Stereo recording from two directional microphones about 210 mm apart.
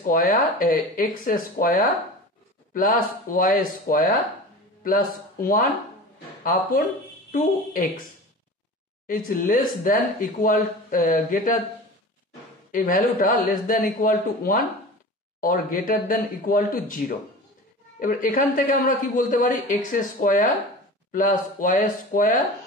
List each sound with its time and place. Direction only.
0.0 s speech: 40° left (ahead or behind)
5.4 s speech: 40° left (ahead or behind)
9.0 s speech: 40° left (ahead or behind)
12.7 s a woman's voice: 40° left (ahead or behind)